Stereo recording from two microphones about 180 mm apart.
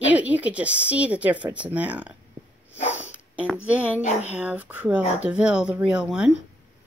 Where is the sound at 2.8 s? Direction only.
35° left (ahead or behind).